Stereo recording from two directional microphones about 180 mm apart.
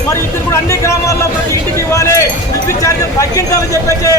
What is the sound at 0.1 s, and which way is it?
A man's voice, 15° left (ahead or behind).